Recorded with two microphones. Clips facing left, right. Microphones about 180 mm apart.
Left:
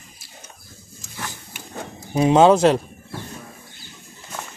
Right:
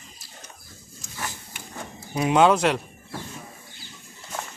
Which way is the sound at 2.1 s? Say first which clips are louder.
Left 5 dB; 30° left (ahead or behind).